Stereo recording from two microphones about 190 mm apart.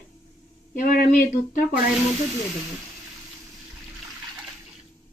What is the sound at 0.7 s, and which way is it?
Speech, 45° left (ahead or behind).